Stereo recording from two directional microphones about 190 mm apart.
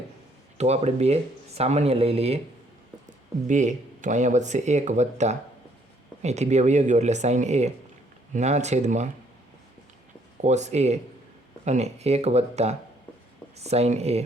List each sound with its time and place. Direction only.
0.6 s speech: 35° right (ahead or behind)
10.4 s speech: 35° right (ahead or behind)